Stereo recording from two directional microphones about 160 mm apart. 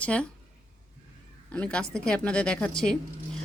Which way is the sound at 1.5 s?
10° left (ahead or behind).